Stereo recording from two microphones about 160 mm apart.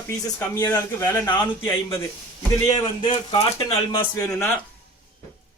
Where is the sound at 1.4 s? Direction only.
15° left (ahead or behind).